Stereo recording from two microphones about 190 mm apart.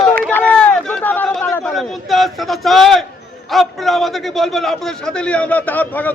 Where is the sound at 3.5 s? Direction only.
Centre (ahead or behind).